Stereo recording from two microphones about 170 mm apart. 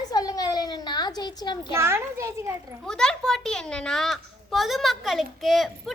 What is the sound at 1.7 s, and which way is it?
A child's voice, 15° right (ahead or behind).